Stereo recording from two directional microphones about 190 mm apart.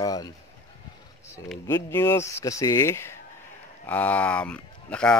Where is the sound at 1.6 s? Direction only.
15° left (ahead or behind).